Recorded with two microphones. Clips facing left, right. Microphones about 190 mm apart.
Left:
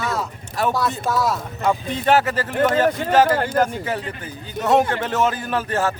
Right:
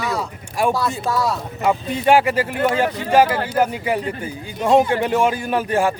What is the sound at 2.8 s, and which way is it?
Speech, 50° left (ahead or behind).